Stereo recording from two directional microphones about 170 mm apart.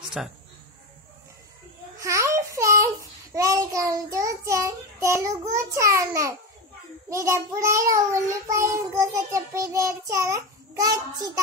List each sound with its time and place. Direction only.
0.2 s speech: centre (ahead or behind)
2.0 s a child's voice: 15° right (ahead or behind)